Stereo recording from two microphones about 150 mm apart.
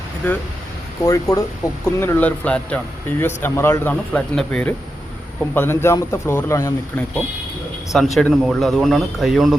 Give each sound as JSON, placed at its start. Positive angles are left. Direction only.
{"t": 0.2, "sound": "speech", "side_deg": 10}
{"t": 1.0, "sound": "speech", "side_deg": 20}
{"t": 5.5, "sound": "speech", "side_deg": 15}
{"t": 7.9, "sound": "speech", "side_deg": 0}